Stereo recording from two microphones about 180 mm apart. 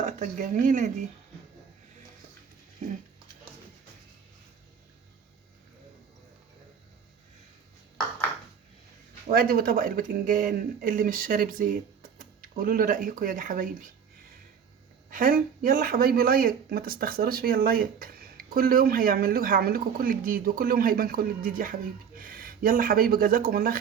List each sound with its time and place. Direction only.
0.0 s speech: 45° right (ahead or behind)
9.2 s speech: 55° right (ahead or behind)
15.1 s speech: 50° right (ahead or behind)